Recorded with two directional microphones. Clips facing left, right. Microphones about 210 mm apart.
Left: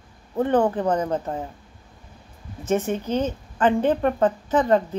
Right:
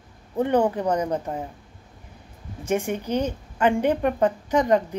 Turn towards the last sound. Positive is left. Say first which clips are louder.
# left 1 dB
turn(degrees=-15)  # may be behind; listen again after turning